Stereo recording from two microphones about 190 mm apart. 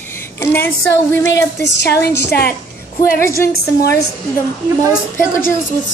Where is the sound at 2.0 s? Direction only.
60° left (ahead or behind).